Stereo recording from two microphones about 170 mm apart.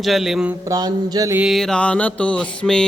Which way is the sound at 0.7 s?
20° right (ahead or behind).